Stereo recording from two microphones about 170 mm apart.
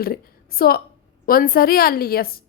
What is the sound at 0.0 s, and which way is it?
A woman's voice, 60° left (ahead or behind).